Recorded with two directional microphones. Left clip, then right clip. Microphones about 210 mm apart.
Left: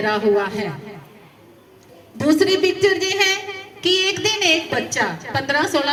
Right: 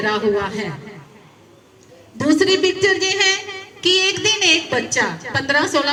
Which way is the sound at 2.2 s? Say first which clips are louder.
Right 1 dB; 15° left (ahead or behind).